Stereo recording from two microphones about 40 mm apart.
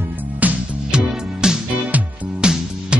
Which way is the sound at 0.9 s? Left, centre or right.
Centre.